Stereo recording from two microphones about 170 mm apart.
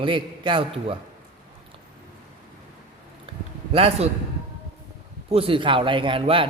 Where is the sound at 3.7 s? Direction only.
35° right (ahead or behind).